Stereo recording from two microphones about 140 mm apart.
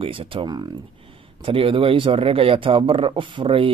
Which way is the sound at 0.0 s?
35° right (ahead or behind).